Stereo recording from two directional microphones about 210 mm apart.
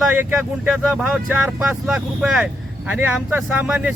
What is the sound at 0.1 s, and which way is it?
Speech, 10° right (ahead or behind).